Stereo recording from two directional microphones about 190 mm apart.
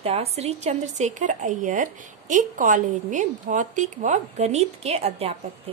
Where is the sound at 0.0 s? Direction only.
30° right (ahead or behind).